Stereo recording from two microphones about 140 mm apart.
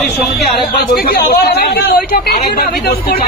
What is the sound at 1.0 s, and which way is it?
Speech, 90° left.